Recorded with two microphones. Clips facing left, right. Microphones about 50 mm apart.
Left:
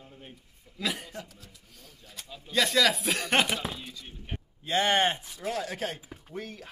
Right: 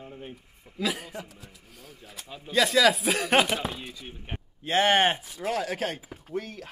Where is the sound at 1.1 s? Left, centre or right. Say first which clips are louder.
Right 3 dB; centre.